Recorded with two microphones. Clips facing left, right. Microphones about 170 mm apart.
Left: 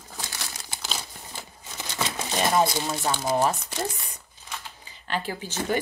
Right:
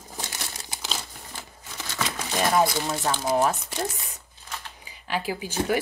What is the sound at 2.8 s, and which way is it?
Speech, centre (ahead or behind).